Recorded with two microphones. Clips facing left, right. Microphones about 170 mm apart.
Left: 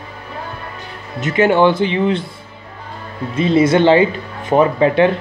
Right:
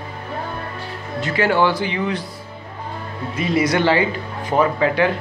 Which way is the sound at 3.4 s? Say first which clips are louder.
Left 6 dB; 25° left (ahead or behind).